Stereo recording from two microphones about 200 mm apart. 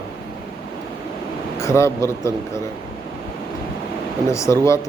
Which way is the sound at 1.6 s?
15° left (ahead or behind).